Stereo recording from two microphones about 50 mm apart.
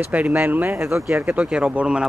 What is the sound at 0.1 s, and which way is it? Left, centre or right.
Speech, right.